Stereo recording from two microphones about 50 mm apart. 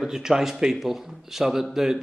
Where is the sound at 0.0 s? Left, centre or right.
Centre.